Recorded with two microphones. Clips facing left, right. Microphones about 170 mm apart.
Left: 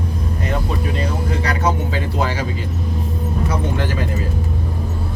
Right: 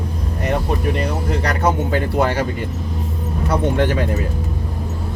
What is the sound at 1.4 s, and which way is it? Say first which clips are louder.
Music: right 2 dB; 55° right (ahead or behind).